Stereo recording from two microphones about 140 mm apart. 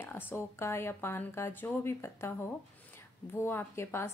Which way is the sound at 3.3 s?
15° left (ahead or behind).